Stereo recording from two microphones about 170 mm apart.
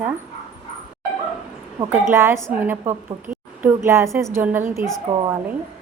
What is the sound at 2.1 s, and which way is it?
A woman's voice, 15° right (ahead or behind).